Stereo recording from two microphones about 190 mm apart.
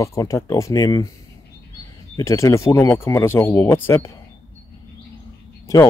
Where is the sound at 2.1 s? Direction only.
15° left (ahead or behind).